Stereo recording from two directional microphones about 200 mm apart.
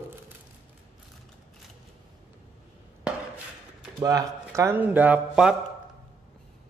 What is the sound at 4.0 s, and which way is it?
Speech, 15° right (ahead or behind).